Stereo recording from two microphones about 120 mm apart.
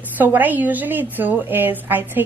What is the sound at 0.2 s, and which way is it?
A woman's voice, 15° right (ahead or behind).